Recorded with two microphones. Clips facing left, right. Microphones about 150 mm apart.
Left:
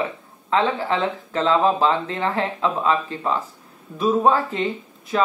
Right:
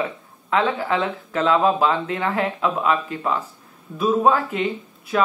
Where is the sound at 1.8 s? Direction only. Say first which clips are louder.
Even; 25° left (ahead or behind).